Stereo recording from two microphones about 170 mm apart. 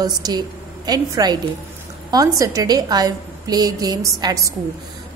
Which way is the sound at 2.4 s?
20° right (ahead or behind).